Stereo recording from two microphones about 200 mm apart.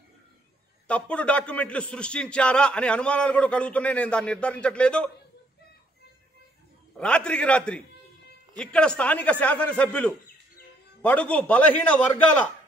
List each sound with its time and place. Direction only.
0.8 s a man's voice: 5° left (ahead or behind)
7.0 s a man's voice: 5° left (ahead or behind)